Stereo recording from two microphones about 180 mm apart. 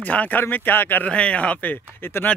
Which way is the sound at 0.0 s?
10° left (ahead or behind).